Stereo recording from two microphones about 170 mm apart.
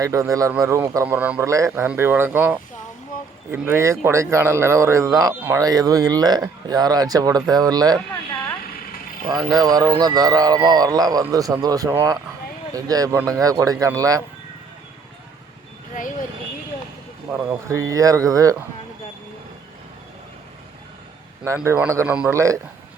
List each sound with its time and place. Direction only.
0.0 s speech: 20° right (ahead or behind)
9.5 s speech: 20° right (ahead or behind)
16.0 s speech: 50° left (ahead or behind)
17.4 s speech: 15° right (ahead or behind)
21.4 s speech: 15° right (ahead or behind)
22.3 s speech: 20° right (ahead or behind)